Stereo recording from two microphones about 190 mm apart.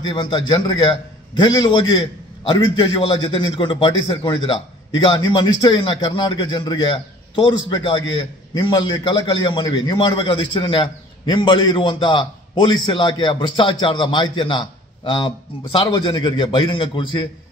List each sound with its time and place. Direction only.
0.1 s a man's voice: 25° left (ahead or behind)